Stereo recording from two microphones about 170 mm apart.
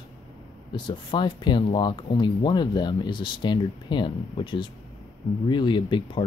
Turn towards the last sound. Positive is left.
turn(degrees=30)  # may be behind; listen again after turning